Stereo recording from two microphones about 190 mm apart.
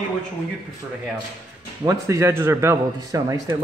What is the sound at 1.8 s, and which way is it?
A man's voice, 15° right (ahead or behind).